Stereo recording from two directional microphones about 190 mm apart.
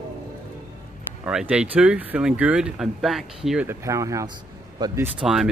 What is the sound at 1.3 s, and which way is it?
Speech, 5° right (ahead or behind).